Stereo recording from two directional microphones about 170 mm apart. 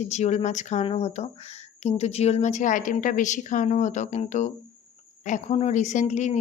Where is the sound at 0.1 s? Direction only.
40° left (ahead or behind).